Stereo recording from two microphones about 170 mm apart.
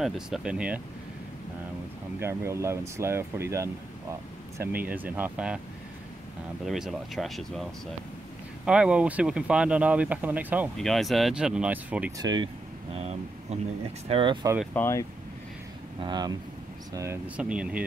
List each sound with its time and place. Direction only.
0.0 s speech: 5° right (ahead or behind)
2.1 s speech: 15° right (ahead or behind)
6.6 s speech: centre (ahead or behind)
10.8 s speech: centre (ahead or behind)
12.2 s speech: 25° right (ahead or behind)
12.9 s speech: 40° right (ahead or behind)
14.7 s speech: 15° left (ahead or behind)
16.0 s speech: 25° right (ahead or behind)
17.4 s speech: 5° right (ahead or behind)